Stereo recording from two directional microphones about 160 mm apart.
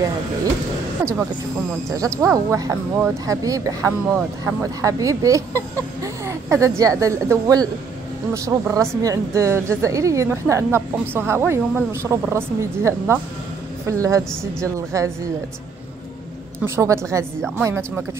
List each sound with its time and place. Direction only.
1.9 s a woman's voice: 20° right (ahead or behind)
16.6 s a woman's voice: 15° right (ahead or behind)